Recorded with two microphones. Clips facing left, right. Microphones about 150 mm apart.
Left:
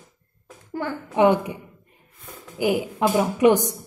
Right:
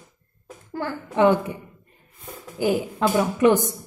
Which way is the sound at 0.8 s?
15° left (ahead or behind).